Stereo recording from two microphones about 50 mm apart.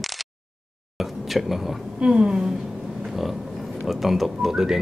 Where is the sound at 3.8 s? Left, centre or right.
Centre.